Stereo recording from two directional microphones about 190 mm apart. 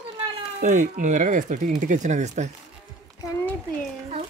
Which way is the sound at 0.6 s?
40° right (ahead or behind).